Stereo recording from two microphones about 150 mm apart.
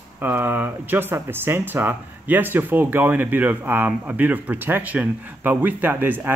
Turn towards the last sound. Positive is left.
turn(degrees=-15)  # may be behind; listen again after turning